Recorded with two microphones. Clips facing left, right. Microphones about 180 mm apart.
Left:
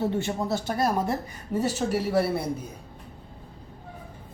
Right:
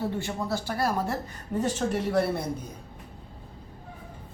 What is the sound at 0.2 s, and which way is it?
A woman's voice, 20° left (ahead or behind).